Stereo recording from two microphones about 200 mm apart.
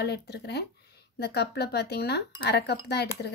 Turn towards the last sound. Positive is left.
turn(degrees=55)  # may be behind; listen again after turning